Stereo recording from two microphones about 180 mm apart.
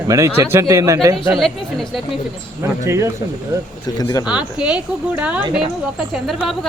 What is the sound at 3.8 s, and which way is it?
Speech, 20° left (ahead or behind).